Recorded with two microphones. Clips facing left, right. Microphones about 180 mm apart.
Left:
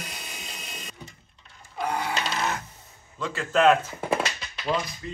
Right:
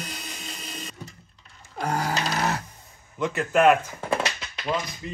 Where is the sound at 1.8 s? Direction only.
40° right (ahead or behind).